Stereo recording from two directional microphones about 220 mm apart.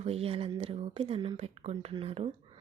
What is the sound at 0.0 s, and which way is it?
Speech, 25° right (ahead or behind).